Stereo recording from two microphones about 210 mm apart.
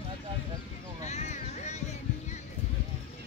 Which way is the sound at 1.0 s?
35° left (ahead or behind).